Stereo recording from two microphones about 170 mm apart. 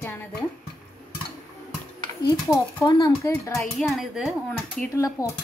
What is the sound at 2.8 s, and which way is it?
Speech, 20° left (ahead or behind).